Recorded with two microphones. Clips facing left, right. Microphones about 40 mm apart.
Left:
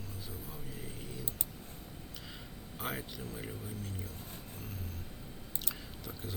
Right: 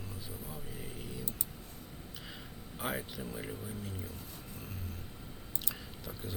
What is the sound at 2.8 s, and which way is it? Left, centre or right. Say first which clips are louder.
Speech: right 2 dB; centre.